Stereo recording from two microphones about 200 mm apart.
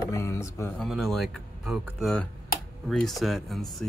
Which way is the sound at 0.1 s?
15° left (ahead or behind).